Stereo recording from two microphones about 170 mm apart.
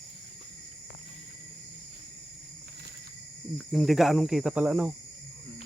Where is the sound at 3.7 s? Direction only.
Centre (ahead or behind).